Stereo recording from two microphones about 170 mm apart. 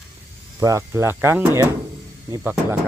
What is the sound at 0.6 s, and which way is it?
Speech, 20° right (ahead or behind).